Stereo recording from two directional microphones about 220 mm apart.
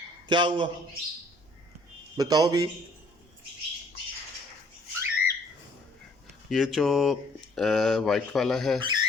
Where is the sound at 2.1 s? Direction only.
15° right (ahead or behind).